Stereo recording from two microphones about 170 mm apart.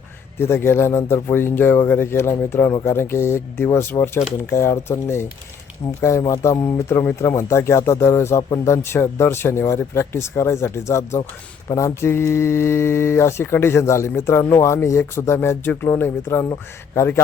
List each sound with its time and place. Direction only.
0.3 s speech: 15° left (ahead or behind)